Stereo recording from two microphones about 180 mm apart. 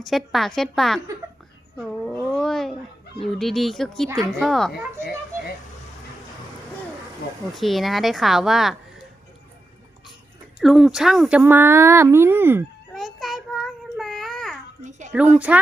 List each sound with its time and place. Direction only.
0.0 s speech: centre (ahead or behind)
7.5 s speech: centre (ahead or behind)
10.6 s speech: centre (ahead or behind)
12.9 s child singing: centre (ahead or behind)
14.8 s a sound: 40° right (ahead or behind)
15.4 s speech: 5° right (ahead or behind)